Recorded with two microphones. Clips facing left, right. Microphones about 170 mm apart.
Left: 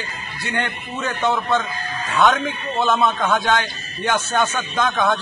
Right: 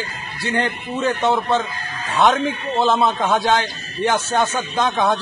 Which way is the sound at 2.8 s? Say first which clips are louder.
Right 1 dB; 30° right (ahead or behind).